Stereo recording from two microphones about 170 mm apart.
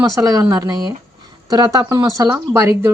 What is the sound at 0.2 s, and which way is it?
Speech, 20° right (ahead or behind).